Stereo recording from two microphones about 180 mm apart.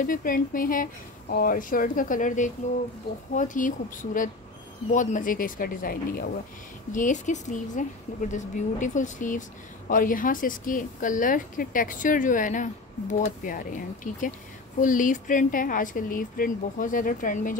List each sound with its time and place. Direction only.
0.0 s speech: 50° left (ahead or behind)